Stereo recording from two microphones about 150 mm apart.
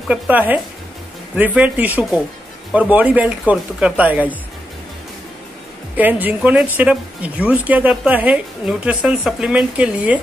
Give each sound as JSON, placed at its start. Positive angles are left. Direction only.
{"t": 0.1, "sound": "a woman's voice", "side_deg": -10}
{"t": 5.9, "sound": "a woman's voice", "side_deg": -10}